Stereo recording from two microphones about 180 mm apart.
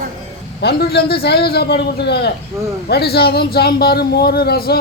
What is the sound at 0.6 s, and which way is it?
Speech, 60° left (ahead or behind).